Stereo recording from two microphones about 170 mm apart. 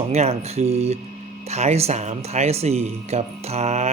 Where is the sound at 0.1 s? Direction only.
40° right (ahead or behind).